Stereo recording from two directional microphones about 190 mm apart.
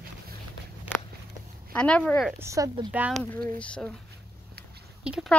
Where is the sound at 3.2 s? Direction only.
5° left (ahead or behind).